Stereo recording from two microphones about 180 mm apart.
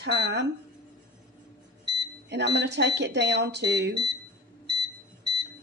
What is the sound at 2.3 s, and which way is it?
Speech, 75° right (ahead or behind).